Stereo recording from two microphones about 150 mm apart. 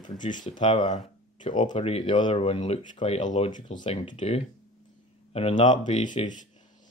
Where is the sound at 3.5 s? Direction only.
30° left (ahead or behind).